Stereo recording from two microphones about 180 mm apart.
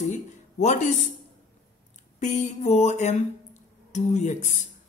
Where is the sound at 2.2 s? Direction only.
40° left (ahead or behind).